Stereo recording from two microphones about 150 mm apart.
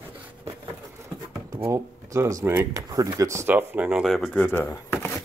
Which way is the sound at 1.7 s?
20° right (ahead or behind).